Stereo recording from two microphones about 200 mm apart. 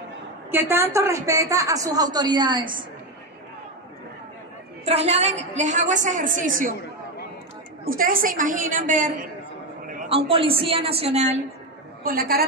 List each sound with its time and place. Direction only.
0.5 s a woman's voice: 10° right (ahead or behind)
4.8 s a woman's voice: 35° right (ahead or behind)
7.8 s a woman's voice: 45° right (ahead or behind)
10.0 s a woman's voice: 30° right (ahead or behind)
12.0 s a woman's voice: 50° right (ahead or behind)